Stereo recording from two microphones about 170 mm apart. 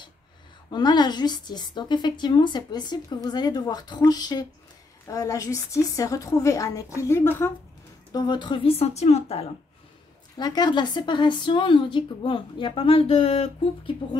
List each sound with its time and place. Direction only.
0.7 s a woman's voice: 25° left (ahead or behind)
8.1 s a woman's voice: 25° left (ahead or behind)
10.3 s a woman's voice: 25° left (ahead or behind)